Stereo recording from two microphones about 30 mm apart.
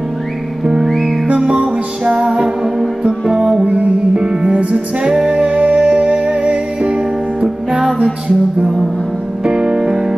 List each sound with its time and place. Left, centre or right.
0.8 s music: centre
2.0 s music: right
3.3 s music: centre
3.6 s music: right
4.5 s music: right
4.7 s music: right
5.8 s music: right
9.4 s music: right